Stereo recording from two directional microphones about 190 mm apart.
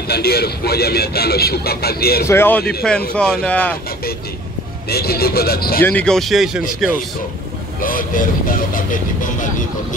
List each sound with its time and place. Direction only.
0.1 s speech: 55° left (ahead or behind)
2.2 s speech: 10° left (ahead or behind)
4.8 s speech: 55° left (ahead or behind)
5.8 s speech: 10° left (ahead or behind)
7.8 s speech: 45° left (ahead or behind)